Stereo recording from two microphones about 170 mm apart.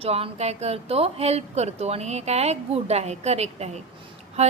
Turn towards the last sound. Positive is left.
turn(degrees=-40)  # may be behind; listen again after turning